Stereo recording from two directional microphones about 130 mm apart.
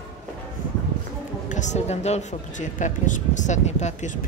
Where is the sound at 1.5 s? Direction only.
65° left (ahead or behind).